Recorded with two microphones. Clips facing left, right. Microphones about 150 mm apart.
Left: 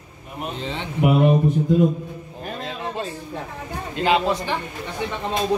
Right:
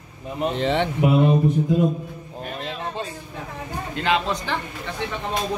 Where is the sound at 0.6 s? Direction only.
70° right (ahead or behind).